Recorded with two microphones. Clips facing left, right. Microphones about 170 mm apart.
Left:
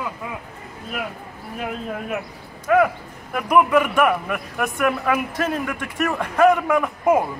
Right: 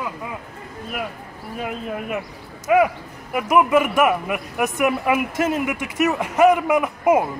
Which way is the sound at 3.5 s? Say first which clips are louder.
Even; 20° right (ahead or behind).